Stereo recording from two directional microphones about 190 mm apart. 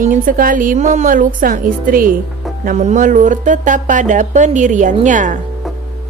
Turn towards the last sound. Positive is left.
turn(degrees=-40)  # may be behind; listen again after turning